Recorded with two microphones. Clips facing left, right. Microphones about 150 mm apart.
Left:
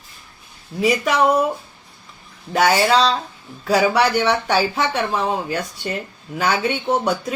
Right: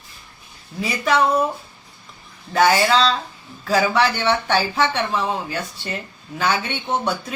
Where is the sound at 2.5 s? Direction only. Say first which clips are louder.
Even; 10° left (ahead or behind).